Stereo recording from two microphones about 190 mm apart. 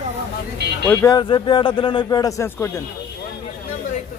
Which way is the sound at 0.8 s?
20° left (ahead or behind).